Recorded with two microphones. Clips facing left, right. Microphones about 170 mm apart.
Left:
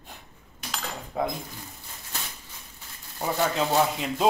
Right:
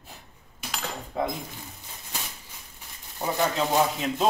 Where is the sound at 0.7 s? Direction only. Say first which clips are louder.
Even; centre (ahead or behind).